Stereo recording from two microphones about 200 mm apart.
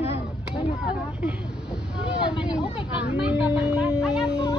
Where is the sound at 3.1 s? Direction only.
5° right (ahead or behind).